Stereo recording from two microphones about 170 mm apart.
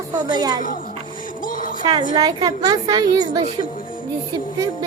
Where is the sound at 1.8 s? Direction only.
25° right (ahead or behind).